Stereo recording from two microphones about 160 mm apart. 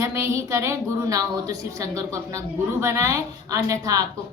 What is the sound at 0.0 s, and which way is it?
A woman's voice, 20° right (ahead or behind).